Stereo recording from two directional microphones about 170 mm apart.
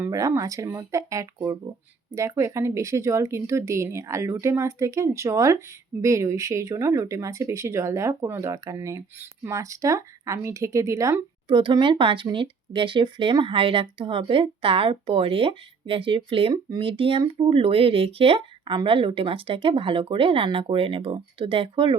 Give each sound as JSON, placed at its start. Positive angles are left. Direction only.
{"t": 0.0, "sound": "speech", "side_deg": -20}